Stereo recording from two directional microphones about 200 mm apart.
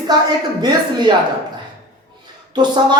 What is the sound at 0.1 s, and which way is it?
Speech, 20° right (ahead or behind).